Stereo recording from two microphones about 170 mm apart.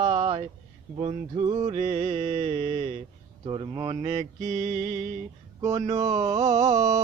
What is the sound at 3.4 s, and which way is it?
Music, 30° right (ahead or behind).